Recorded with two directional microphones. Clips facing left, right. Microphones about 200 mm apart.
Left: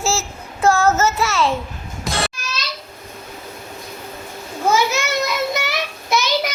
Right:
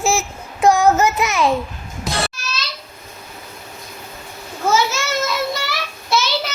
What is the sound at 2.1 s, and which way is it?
Babbling, centre (ahead or behind).